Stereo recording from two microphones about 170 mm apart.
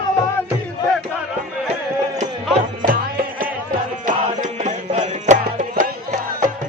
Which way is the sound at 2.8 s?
55° right (ahead or behind).